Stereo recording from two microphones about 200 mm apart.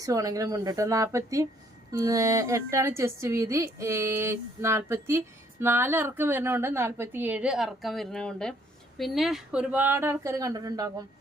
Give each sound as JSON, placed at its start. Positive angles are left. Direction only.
{"t": 0.0, "sound": "a woman's voice", "side_deg": -15}